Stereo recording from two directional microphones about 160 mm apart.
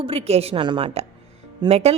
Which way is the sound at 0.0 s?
40° right (ahead or behind).